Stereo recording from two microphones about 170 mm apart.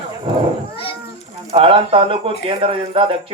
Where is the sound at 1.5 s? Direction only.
35° right (ahead or behind).